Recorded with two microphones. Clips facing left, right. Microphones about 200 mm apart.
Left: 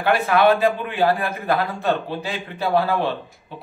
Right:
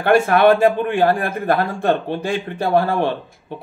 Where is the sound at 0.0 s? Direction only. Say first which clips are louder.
Right 4 dB; 50° right (ahead or behind).